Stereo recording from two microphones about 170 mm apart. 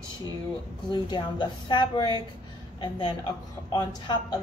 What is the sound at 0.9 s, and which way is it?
A woman's voice, 25° left (ahead or behind).